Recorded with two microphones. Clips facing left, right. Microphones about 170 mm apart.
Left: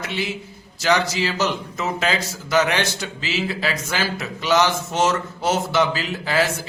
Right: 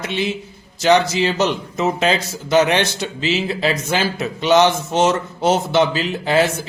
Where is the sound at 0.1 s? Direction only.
20° right (ahead or behind).